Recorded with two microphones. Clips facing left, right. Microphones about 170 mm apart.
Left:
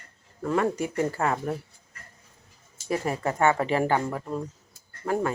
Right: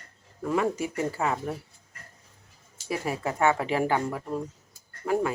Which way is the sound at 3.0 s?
5° right (ahead or behind).